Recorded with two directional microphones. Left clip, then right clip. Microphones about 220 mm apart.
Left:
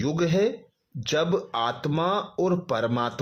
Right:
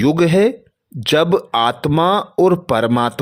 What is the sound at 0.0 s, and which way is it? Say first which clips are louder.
Speech: right 10 dB; 45° right (ahead or behind).